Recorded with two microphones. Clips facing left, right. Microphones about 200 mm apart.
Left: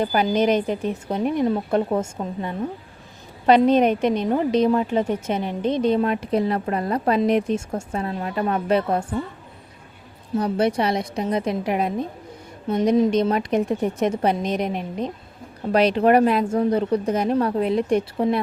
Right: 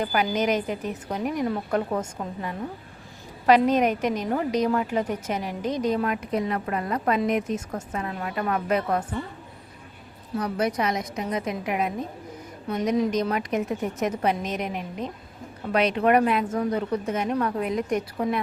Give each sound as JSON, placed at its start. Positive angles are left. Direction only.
{"t": 0.0, "sound": "a woman's voice", "side_deg": 30}
{"t": 10.3, "sound": "a woman's voice", "side_deg": 30}